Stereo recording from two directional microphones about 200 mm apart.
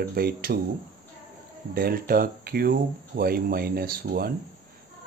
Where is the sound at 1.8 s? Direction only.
45° right (ahead or behind).